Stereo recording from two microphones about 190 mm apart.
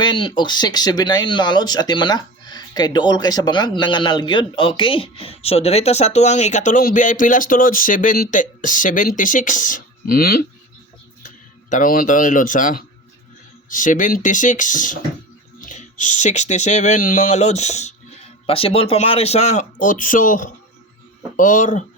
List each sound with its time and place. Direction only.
0.0 s speech: 25° left (ahead or behind); by 10.4 s 55° left (ahead or behind)
11.7 s speech: 45° left (ahead or behind)